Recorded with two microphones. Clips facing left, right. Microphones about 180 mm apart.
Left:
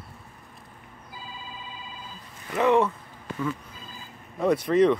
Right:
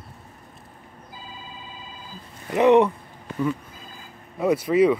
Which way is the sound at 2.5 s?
20° right (ahead or behind).